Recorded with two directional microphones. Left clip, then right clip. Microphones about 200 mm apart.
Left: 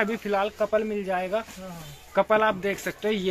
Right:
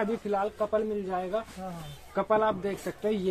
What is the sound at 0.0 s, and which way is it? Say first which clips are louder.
Speech: left 4 dB; 15° left (ahead or behind).